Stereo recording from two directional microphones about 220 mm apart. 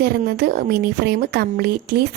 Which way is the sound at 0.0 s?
45° right (ahead or behind).